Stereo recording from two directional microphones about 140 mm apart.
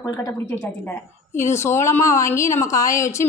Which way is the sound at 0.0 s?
25° left (ahead or behind).